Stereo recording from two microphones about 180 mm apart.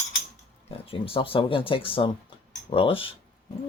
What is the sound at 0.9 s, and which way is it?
Speech, 30° left (ahead or behind).